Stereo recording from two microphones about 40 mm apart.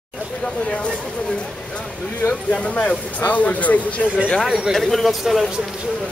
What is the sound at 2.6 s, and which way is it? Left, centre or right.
Speech, left.